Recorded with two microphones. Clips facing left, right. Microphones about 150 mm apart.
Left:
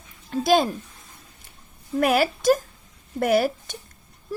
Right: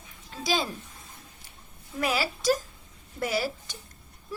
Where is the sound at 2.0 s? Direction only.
55° left (ahead or behind).